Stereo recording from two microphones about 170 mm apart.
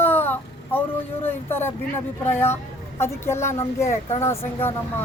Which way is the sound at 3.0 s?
15° left (ahead or behind).